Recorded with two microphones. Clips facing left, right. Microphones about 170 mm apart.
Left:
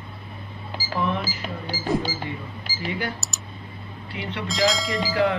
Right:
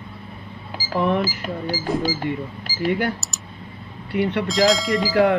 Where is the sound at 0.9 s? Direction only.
55° right (ahead or behind).